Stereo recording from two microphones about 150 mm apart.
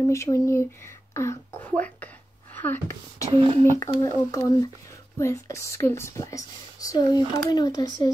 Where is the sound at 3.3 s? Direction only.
40° right (ahead or behind).